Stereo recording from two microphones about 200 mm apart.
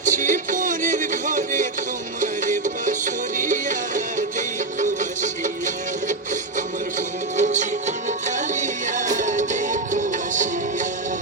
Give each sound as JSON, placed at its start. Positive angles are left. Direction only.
{"t": 0.0, "sound": "music", "side_deg": -40}
{"t": 7.3, "sound": "music", "side_deg": -35}